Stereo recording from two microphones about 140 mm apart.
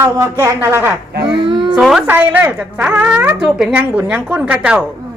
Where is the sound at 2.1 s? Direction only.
15° right (ahead or behind).